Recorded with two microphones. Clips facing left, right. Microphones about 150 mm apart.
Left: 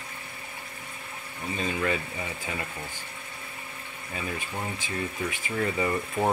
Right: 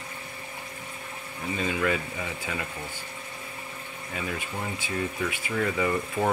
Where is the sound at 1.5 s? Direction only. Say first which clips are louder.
Right 1 dB; 25° left (ahead or behind).